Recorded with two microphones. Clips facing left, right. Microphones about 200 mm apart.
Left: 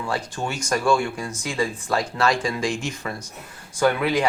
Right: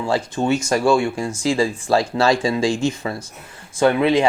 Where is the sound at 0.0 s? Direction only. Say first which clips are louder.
Right 7 dB; 25° right (ahead or behind).